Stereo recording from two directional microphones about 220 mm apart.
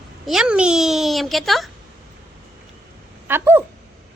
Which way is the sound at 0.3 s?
5° right (ahead or behind).